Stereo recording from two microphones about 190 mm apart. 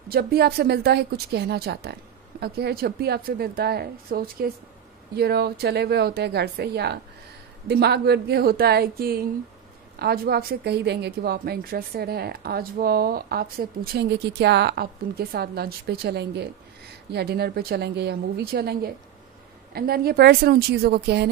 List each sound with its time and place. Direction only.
0.1 s a woman's voice: 55° right (ahead or behind)